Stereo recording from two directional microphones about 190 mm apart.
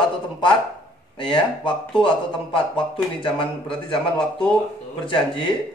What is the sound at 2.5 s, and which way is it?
A man's voice, 25° left (ahead or behind).